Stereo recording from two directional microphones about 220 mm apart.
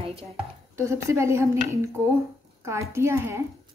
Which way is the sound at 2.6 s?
15° right (ahead or behind).